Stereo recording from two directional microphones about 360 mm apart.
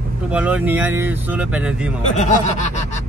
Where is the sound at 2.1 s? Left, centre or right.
Centre.